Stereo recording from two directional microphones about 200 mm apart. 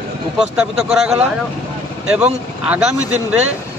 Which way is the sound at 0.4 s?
5° right (ahead or behind).